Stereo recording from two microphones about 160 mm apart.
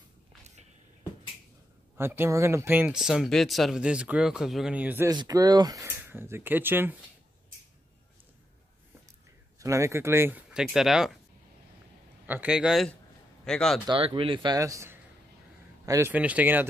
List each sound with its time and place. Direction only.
2.0 s speech: 15° right (ahead or behind)
5.1 s speech: 25° right (ahead or behind)
9.6 s speech: 20° right (ahead or behind)
10.5 s speech: centre (ahead or behind)
12.3 s speech: 5° right (ahead or behind)
13.8 s speech: 35° right (ahead or behind)
16.1 s speech: 10° right (ahead or behind)